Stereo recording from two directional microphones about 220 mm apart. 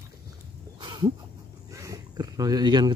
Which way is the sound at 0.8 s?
20° right (ahead or behind).